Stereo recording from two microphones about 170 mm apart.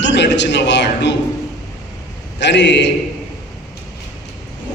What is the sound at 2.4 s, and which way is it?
Speech, 90° left.